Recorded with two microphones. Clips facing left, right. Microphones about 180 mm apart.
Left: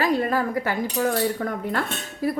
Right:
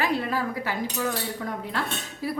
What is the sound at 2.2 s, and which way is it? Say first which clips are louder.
Speech: left 6 dB; 50° left (ahead or behind).